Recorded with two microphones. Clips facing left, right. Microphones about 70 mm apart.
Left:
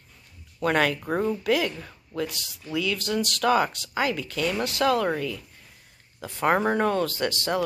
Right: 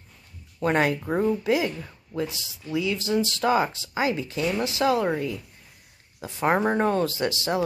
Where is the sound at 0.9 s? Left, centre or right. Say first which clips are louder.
Right 2 dB; centre.